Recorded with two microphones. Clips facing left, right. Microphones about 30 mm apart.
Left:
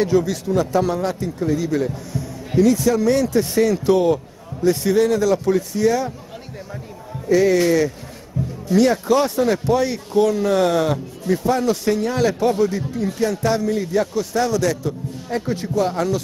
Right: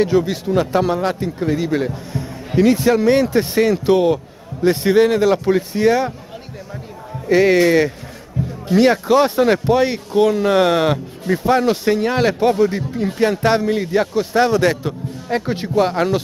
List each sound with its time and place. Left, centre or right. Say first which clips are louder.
0.0 s a man's voice: right 2 dB; right
4.6 s speech: right 3 dB; right
7.2 s speech: right 3 dB; right
8.4 s music: right 2 dB; right
8.7 s speech: right 3 dB; right